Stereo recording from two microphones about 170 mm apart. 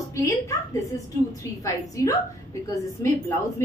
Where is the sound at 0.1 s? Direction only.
20° left (ahead or behind).